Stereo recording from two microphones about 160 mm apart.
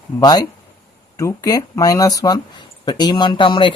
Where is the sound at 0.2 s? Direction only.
25° left (ahead or behind).